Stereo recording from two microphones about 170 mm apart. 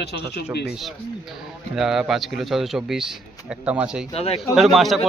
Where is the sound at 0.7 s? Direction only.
Centre (ahead or behind).